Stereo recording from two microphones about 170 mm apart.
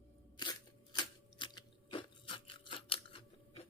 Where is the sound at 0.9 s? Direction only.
25° left (ahead or behind).